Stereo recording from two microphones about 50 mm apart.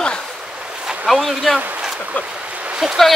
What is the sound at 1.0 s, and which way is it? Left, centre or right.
Speech, centre.